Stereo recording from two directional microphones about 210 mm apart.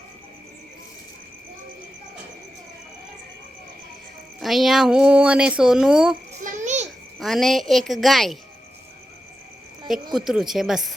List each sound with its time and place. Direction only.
4.4 s speech: centre (ahead or behind)
6.4 s a sound: 35° right (ahead or behind)
7.2 s speech: centre (ahead or behind)
9.9 s speech: centre (ahead or behind)